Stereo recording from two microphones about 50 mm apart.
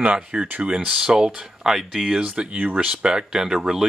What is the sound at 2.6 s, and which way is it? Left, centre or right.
Speech, right.